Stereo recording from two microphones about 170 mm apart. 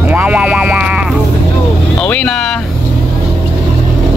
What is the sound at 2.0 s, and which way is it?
Vehicle, 5° left (ahead or behind).